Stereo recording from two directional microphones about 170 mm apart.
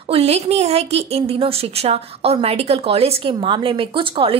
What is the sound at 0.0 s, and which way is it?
A woman's voice, 35° right (ahead or behind).